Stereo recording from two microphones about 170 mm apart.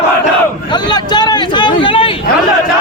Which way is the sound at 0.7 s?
25° left (ahead or behind).